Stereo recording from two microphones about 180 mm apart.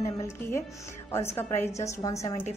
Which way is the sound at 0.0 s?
15° left (ahead or behind).